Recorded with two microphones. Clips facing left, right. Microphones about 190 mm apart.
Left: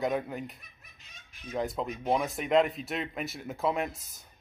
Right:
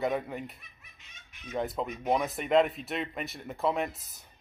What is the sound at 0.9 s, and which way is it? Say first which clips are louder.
Fowl: left 1 dB; 35° left (ahead or behind).